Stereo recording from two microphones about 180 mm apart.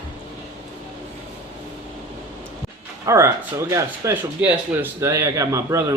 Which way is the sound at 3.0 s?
15° right (ahead or behind).